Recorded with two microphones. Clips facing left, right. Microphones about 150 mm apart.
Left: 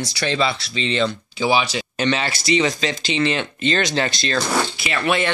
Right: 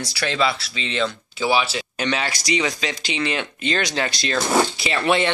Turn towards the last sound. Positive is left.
turn(degrees=-25)  # may be behind; listen again after turning